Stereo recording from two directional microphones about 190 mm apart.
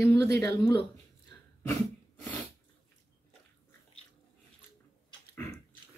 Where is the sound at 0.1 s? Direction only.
15° left (ahead or behind).